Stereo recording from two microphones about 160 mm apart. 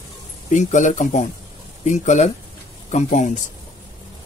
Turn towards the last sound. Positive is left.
turn(degrees=50)  # may be behind; listen again after turning